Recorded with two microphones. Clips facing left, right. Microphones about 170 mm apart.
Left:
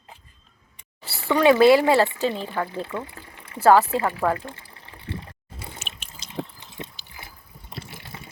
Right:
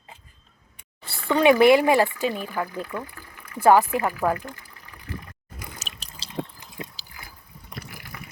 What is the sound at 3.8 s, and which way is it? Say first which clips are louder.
Speech: left 1 dB; 25° left (ahead or behind).